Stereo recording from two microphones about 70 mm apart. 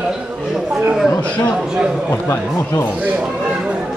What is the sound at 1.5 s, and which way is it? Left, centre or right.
Speech, centre.